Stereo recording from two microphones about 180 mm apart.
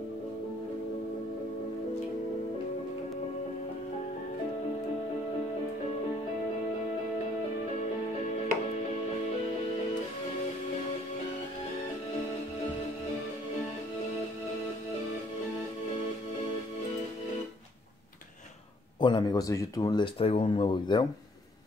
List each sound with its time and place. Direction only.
18.9 s speech: 25° left (ahead or behind)